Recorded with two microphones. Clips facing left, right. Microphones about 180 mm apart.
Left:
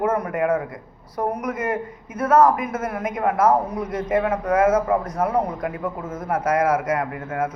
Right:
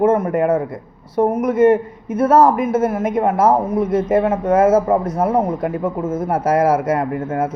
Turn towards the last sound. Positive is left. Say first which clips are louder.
# right 5 dB
turn(degrees=-30)  # may be behind; listen again after turning